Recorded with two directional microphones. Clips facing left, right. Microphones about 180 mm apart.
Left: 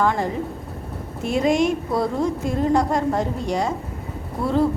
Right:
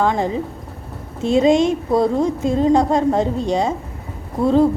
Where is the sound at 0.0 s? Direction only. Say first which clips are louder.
Right 3 dB; 20° right (ahead or behind).